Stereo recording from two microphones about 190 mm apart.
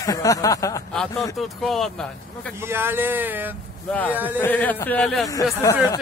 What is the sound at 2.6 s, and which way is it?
Speech, 10° right (ahead or behind).